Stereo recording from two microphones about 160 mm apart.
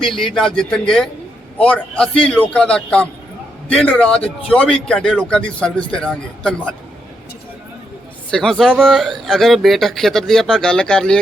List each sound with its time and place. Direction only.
0.0 s a man's voice: centre (ahead or behind)
8.3 s a man's voice: 5° left (ahead or behind)